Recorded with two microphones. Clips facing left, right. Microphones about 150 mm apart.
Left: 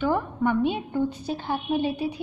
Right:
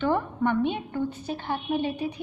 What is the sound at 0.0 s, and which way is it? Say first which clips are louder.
A woman's voice: left 1 dB; 5° left (ahead or behind).